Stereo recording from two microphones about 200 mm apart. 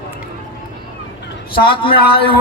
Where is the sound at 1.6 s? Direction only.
25° left (ahead or behind).